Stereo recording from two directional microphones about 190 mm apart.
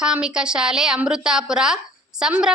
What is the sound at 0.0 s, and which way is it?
A woman's voice, 5° right (ahead or behind).